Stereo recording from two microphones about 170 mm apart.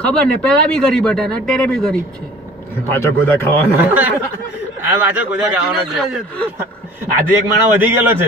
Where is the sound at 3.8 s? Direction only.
10° right (ahead or behind).